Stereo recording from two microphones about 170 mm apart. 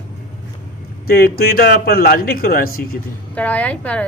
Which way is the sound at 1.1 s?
60° left (ahead or behind).